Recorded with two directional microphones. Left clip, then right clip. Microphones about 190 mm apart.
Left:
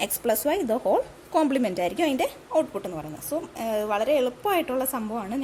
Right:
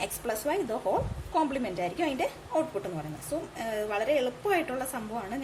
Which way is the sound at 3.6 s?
35° left (ahead or behind).